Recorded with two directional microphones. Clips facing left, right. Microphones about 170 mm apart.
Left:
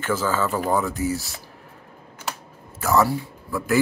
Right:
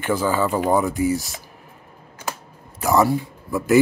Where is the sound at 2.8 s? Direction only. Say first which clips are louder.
Right 2 dB; 15° right (ahead or behind).